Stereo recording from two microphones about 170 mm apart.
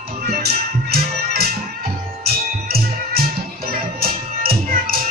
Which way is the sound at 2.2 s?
65° right (ahead or behind).